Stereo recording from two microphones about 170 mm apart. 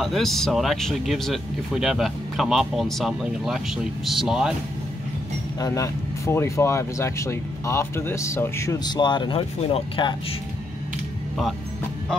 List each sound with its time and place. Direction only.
0.0 s speech: centre (ahead or behind)
5.6 s speech: 20° left (ahead or behind)